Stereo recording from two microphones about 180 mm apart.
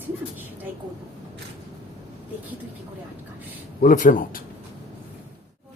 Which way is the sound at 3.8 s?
45° left (ahead or behind).